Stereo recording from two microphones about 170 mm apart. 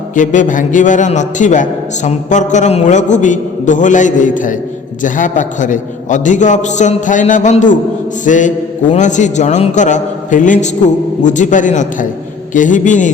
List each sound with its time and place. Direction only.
0.2 s a man's voice: 50° left (ahead or behind)